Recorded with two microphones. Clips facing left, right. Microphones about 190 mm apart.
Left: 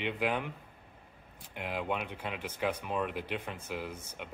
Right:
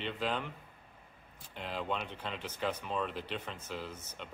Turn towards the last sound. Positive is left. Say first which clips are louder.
# left 3 dB
turn(degrees=10)  # may be behind; listen again after turning